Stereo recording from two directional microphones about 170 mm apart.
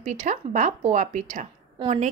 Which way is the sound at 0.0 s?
45° right (ahead or behind).